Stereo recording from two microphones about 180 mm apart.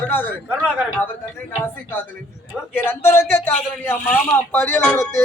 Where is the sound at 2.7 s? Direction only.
10° left (ahead or behind).